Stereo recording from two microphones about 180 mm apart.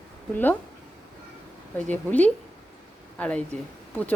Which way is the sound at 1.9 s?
10° left (ahead or behind).